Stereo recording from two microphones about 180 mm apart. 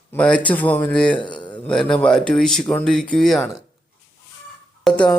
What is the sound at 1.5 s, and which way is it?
Speech, 5° left (ahead or behind).